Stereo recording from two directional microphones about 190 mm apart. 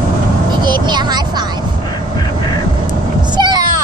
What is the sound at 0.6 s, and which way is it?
Speech, 25° right (ahead or behind).